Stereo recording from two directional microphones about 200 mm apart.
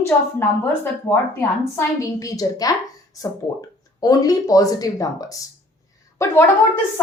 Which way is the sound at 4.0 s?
20° left (ahead or behind).